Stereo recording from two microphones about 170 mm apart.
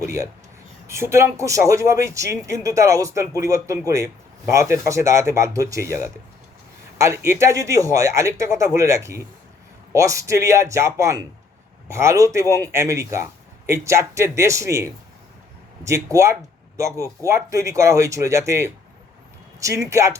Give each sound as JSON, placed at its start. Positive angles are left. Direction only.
{"t": 0.0, "sound": "speech", "side_deg": -15}
{"t": 7.3, "sound": "speech", "side_deg": -15}